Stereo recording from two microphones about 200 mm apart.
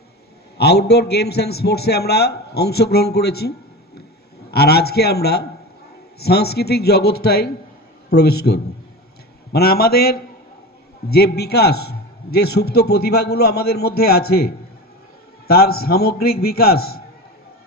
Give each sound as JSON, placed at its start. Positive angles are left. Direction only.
{"t": 0.6, "sound": "a man's voice", "side_deg": 55}
{"t": 4.5, "sound": "a man's voice", "side_deg": 50}